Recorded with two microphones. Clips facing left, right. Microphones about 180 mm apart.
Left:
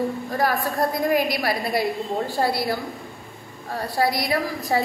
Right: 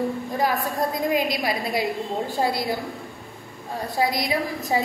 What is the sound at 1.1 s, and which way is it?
A woman's voice, 15° right (ahead or behind).